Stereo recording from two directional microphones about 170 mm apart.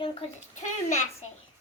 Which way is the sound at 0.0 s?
35° left (ahead or behind).